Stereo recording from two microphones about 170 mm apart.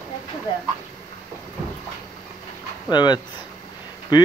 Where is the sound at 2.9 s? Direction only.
25° left (ahead or behind).